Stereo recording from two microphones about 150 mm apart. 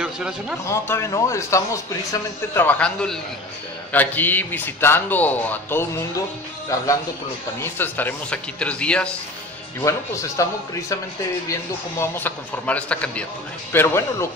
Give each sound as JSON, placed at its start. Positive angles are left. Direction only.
{"t": 0.0, "sound": "a man's voice", "side_deg": -5}
{"t": 0.7, "sound": "speech", "side_deg": 20}
{"t": 2.5, "sound": "a man's voice", "side_deg": 10}
{"t": 9.8, "sound": "speech", "side_deg": 20}
{"t": 12.0, "sound": "a man's voice", "side_deg": 10}